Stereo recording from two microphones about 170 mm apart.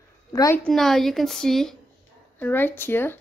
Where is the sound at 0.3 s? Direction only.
20° left (ahead or behind).